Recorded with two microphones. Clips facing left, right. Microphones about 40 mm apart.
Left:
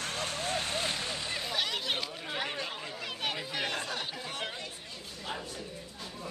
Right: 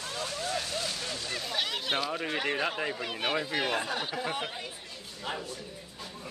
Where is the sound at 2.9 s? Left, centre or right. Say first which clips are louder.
Right 5 dB; centre.